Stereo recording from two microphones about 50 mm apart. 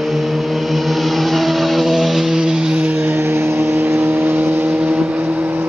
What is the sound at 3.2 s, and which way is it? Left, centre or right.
Vehicle, right.